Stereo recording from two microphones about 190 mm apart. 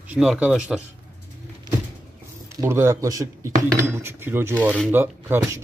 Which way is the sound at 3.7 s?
15° right (ahead or behind).